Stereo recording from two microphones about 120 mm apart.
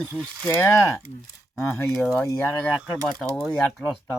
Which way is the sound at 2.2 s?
25° left (ahead or behind).